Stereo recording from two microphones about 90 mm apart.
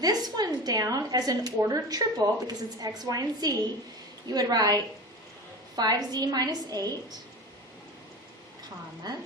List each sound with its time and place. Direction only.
0.0 s a woman's voice: 45° right (ahead or behind)